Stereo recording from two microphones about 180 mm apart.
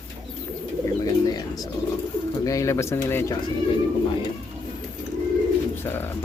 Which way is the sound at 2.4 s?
20° left (ahead or behind).